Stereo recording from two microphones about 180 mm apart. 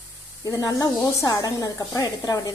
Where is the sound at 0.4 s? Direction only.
20° left (ahead or behind).